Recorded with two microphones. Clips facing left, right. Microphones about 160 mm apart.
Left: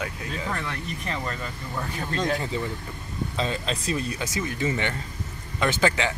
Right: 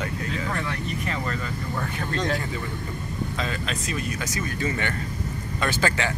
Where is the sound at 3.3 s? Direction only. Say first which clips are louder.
Left 5 dB; 30° left (ahead or behind).